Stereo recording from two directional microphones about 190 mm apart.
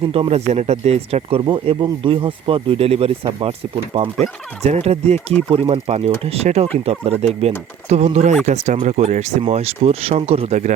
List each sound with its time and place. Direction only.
0.1 s speech: 30° right (ahead or behind)